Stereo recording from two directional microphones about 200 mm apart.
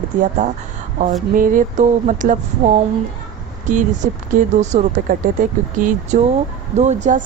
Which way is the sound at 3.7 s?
40° right (ahead or behind).